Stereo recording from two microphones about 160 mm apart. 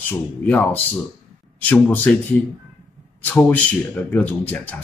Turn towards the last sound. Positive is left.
turn(degrees=10)  # may be behind; listen again after turning